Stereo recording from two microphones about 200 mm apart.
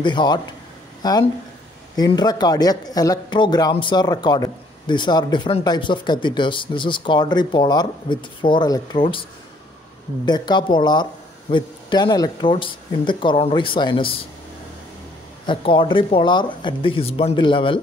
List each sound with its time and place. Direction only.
0.0 s speech: 20° left (ahead or behind)
10.2 s speech: 20° left (ahead or behind)
15.4 s speech: 25° left (ahead or behind)